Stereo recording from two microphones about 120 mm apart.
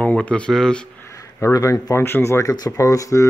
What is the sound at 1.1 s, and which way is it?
Speech, 25° left (ahead or behind).